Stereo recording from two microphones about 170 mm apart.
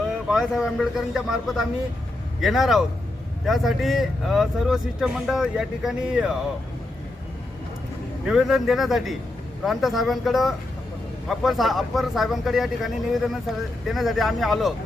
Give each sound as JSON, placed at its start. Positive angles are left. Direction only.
{"t": 0.3, "sound": "speech", "side_deg": -5}
{"t": 8.3, "sound": "speech", "side_deg": 0}